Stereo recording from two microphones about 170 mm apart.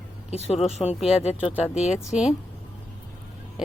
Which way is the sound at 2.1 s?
5° right (ahead or behind).